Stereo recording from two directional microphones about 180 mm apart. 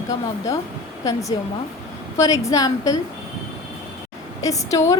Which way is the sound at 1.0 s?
20° left (ahead or behind).